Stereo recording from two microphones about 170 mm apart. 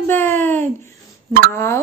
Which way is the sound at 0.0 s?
15° left (ahead or behind).